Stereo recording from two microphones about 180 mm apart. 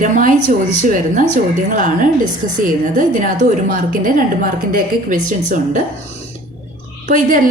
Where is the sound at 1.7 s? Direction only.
45° right (ahead or behind).